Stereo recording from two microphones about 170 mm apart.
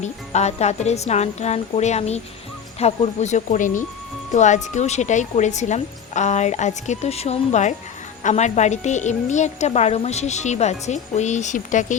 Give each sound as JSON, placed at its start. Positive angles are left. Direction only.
{"t": 0.0, "sound": "speech", "side_deg": 40}